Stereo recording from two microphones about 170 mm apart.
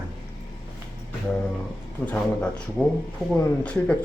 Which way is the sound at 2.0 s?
5° left (ahead or behind).